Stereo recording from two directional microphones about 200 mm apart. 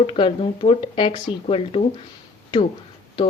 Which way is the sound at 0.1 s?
30° left (ahead or behind).